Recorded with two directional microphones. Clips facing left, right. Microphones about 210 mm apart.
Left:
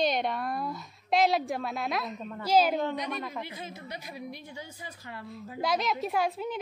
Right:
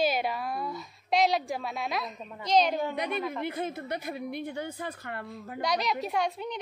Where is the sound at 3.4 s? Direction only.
55° right (ahead or behind).